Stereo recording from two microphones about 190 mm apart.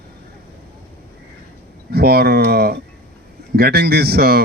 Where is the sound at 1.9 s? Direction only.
55° right (ahead or behind).